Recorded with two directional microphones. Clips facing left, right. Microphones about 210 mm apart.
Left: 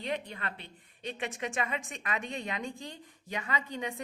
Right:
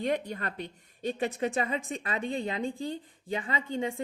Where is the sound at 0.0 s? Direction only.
45° right (ahead or behind).